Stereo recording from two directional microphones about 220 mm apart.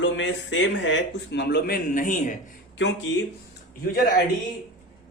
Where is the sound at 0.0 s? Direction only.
55° left (ahead or behind); by 2.3 s 35° left (ahead or behind).